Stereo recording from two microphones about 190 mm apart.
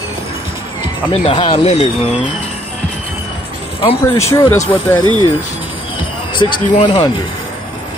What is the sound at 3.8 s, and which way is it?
Speech, 30° left (ahead or behind).